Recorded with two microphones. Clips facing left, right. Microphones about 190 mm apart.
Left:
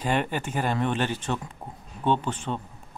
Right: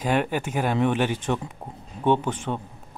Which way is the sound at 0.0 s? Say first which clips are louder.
Right 3 dB; 10° right (ahead or behind).